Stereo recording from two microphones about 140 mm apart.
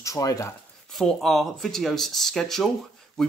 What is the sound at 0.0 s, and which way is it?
Speech, 25° left (ahead or behind).